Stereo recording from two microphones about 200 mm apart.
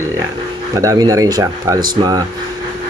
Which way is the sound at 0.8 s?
15° right (ahead or behind).